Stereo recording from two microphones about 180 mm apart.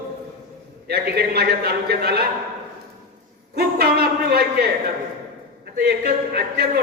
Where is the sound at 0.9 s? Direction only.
60° right (ahead or behind).